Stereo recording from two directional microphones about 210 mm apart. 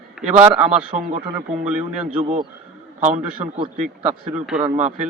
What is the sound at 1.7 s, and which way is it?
Speech, 5° right (ahead or behind).